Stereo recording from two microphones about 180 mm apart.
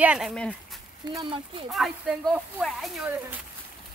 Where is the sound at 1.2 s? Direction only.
30° right (ahead or behind).